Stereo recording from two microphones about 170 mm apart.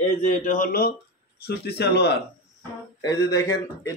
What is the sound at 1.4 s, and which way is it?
Speech, 70° left (ahead or behind).